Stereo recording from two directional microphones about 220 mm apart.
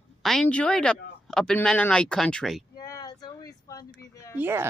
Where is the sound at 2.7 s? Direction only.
15° left (ahead or behind).